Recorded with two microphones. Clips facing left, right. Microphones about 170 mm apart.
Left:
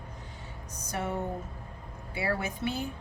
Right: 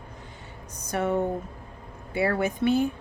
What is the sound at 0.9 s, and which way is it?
Speech, 60° right (ahead or behind).